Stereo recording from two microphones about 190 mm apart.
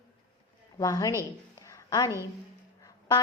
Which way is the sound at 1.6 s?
20° left (ahead or behind).